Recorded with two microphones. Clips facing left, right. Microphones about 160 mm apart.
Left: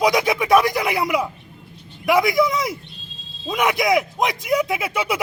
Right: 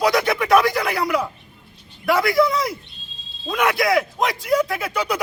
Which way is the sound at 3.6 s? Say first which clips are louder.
Even; 15° left (ahead or behind).